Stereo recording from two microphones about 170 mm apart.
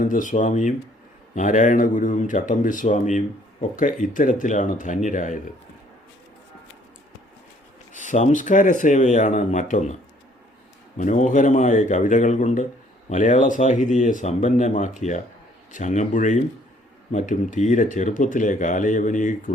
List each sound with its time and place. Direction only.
0.0 s speech: 50° left (ahead or behind)
7.9 s speech: 45° left (ahead or behind)